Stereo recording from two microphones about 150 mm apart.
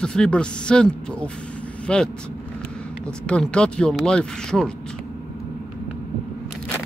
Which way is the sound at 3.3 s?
5° left (ahead or behind).